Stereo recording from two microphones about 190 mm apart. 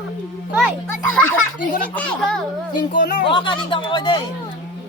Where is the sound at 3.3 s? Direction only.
25° left (ahead or behind).